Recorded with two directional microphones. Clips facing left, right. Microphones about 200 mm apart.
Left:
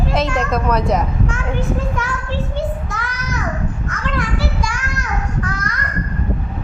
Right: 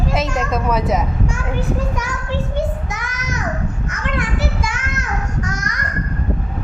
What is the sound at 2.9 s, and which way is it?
Child singing, 20° right (ahead or behind).